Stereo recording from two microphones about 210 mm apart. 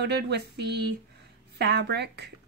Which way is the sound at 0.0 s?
55° right (ahead or behind).